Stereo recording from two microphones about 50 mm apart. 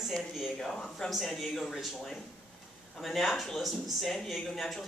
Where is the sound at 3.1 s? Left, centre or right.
Centre.